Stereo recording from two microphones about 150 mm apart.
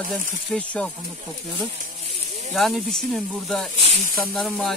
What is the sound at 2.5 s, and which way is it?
Speech, centre (ahead or behind).